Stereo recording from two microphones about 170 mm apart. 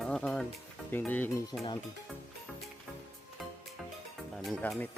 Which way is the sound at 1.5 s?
25° left (ahead or behind).